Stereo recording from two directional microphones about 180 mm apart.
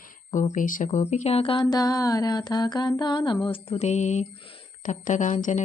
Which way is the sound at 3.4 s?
30° left (ahead or behind).